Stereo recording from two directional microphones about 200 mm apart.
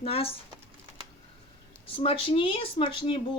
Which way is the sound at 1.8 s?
30° left (ahead or behind).